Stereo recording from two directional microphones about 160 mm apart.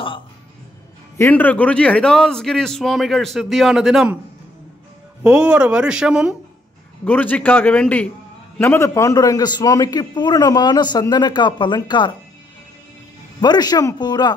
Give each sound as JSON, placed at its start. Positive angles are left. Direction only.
{"t": 1.1, "sound": "a man's voice", "side_deg": 15}
{"t": 5.2, "sound": "a man's voice", "side_deg": -5}
{"t": 7.1, "sound": "a man's voice", "side_deg": 10}
{"t": 13.4, "sound": "a man's voice", "side_deg": 25}